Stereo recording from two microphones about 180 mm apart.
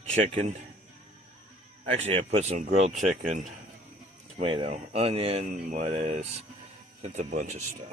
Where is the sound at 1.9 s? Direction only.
40° right (ahead or behind).